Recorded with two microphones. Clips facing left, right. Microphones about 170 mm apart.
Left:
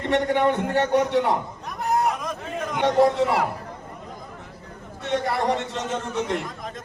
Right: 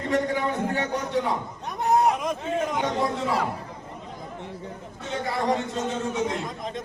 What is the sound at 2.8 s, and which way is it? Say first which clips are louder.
Speech: left 7 dB; 65° left (ahead or behind).